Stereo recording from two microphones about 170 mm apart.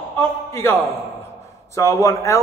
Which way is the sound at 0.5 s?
15° left (ahead or behind).